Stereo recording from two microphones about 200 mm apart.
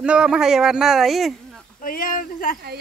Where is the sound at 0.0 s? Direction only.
5° right (ahead or behind).